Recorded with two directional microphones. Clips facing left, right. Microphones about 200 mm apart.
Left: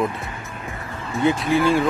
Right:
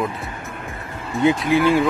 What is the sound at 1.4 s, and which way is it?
Speech, 15° right (ahead or behind).